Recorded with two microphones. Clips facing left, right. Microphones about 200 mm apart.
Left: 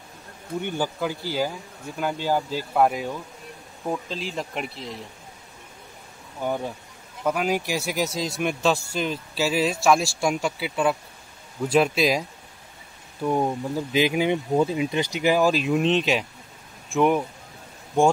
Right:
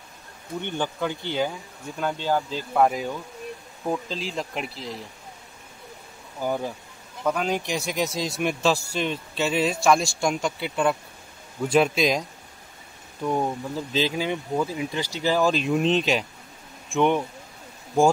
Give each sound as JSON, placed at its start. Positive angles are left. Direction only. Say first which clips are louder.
{"t": 0.6, "sound": "speech", "louder": "left 1 dB", "side_deg": 10}
{"t": 6.4, "sound": "speech", "louder": "even", "side_deg": 0}
{"t": 15.5, "sound": "speech", "louder": "left 1 dB", "side_deg": 0}